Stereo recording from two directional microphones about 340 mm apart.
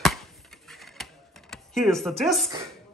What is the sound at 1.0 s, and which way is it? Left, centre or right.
Printer, centre.